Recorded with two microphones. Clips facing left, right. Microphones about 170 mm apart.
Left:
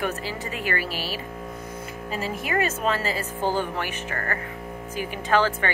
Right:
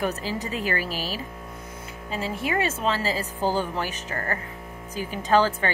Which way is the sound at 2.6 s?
35° right (ahead or behind).